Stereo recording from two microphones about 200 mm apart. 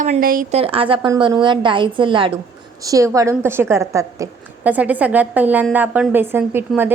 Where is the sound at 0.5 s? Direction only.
30° right (ahead or behind).